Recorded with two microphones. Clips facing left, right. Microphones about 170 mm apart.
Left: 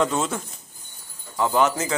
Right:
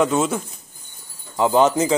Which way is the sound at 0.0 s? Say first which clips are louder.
Right 4 dB; 10° right (ahead or behind).